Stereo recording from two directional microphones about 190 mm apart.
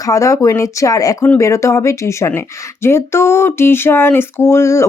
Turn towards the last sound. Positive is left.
turn(degrees=15)  # may be behind; listen again after turning